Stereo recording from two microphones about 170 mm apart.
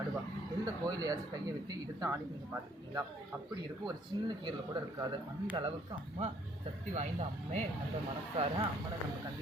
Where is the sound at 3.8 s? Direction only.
25° right (ahead or behind).